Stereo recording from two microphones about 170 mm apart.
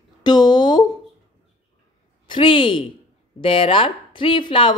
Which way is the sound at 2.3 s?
30° left (ahead or behind).